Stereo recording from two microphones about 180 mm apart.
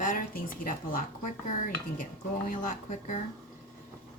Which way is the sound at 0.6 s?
50° left (ahead or behind).